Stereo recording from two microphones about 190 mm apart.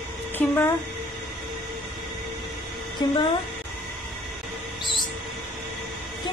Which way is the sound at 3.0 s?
25° left (ahead or behind).